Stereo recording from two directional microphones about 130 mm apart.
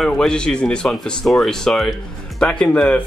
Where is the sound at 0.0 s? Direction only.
5° left (ahead or behind).